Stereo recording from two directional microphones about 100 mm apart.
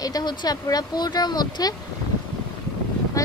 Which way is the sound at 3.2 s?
35° left (ahead or behind).